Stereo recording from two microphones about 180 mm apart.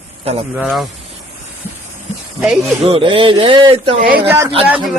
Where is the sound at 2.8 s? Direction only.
30° right (ahead or behind).